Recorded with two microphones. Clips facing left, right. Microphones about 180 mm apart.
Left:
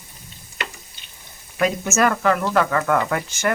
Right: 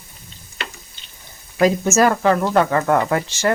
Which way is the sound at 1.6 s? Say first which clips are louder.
Right 4 dB; 35° right (ahead or behind).